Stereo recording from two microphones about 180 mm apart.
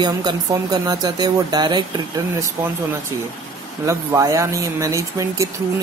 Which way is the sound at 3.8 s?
15° right (ahead or behind).